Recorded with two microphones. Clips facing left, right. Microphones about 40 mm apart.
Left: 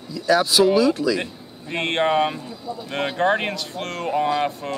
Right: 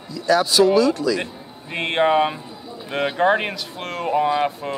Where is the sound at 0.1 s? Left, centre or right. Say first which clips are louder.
Even; centre.